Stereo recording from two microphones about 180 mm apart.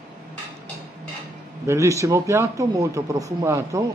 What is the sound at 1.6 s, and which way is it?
Speech, 15° right (ahead or behind).